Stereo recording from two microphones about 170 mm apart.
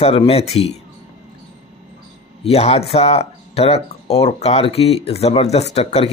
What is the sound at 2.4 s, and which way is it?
Speech, 35° left (ahead or behind).